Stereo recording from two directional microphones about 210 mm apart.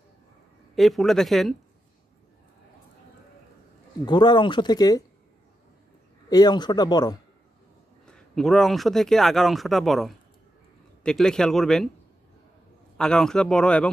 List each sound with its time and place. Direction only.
0.7 s speech: centre (ahead or behind)
4.0 s speech: 20° left (ahead or behind)
6.2 s speech: 20° left (ahead or behind)
8.0 s speech: centre (ahead or behind)
12.9 s speech: 5° left (ahead or behind)